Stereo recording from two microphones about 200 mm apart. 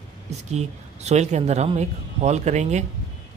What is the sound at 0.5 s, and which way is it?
Speech, 35° right (ahead or behind).